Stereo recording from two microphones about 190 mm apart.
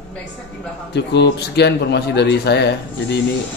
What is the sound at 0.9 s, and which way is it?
Speech, 65° left (ahead or behind).